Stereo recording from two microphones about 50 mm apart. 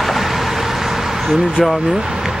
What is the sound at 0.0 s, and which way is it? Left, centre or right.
Vehicle, centre.